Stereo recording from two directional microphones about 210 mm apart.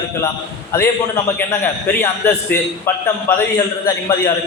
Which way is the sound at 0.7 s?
10° left (ahead or behind).